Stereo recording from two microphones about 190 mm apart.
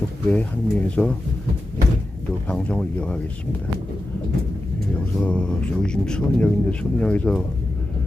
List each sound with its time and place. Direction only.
0.3 s speech: 5° left (ahead or behind)
2.5 s speech: 5° left (ahead or behind)
5.2 s speech: 5° left (ahead or behind)